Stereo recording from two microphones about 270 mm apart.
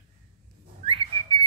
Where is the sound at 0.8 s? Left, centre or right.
Centre.